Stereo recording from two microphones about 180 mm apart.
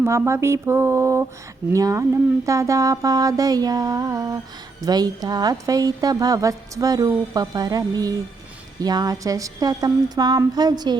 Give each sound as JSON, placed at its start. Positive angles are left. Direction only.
{"t": 0.0, "sound": "a woman's voice", "side_deg": -15}